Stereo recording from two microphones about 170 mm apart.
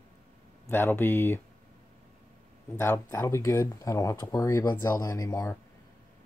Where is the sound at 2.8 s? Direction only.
15° left (ahead or behind).